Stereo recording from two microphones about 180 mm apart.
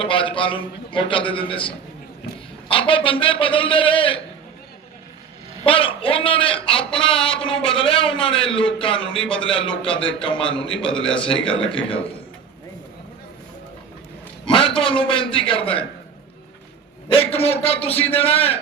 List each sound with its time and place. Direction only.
0.0 s a man's voice: 30° left (ahead or behind)
5.6 s a man's voice: 30° left (ahead or behind)
14.4 s a man's voice: 30° left (ahead or behind)
17.1 s a man's voice: 30° left (ahead or behind)